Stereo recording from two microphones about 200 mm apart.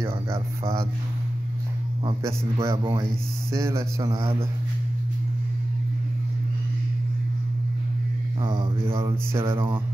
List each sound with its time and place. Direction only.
0.0 s speech: 15° right (ahead or behind)
2.0 s a man's voice: 20° right (ahead or behind)
8.4 s a man's voice: 20° right (ahead or behind)
8.9 s a man's voice: 10° right (ahead or behind)